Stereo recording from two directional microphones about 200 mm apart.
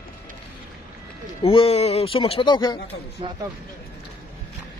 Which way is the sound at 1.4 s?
30° left (ahead or behind).